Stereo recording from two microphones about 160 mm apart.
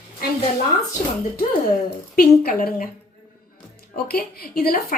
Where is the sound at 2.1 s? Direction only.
65° left (ahead or behind).